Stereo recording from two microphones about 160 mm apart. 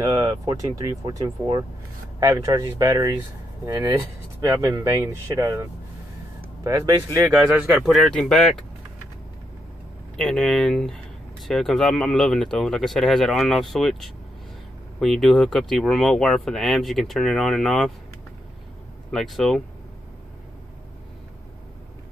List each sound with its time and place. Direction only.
0.0 s speech: 25° right (ahead or behind)
7.1 s speech: 20° right (ahead or behind); by 8.6 s 5° left (ahead or behind)
10.1 s speech: 5° left (ahead or behind)
19.1 s speech: centre (ahead or behind)